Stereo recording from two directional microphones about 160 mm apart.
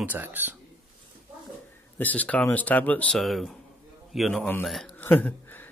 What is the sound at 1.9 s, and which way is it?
A man's voice, 10° left (ahead or behind).